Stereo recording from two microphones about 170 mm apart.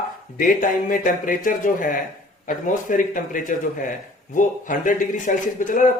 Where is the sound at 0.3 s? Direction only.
55° left (ahead or behind).